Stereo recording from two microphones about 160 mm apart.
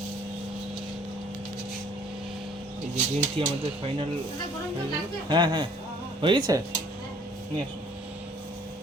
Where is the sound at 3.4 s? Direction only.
35° right (ahead or behind).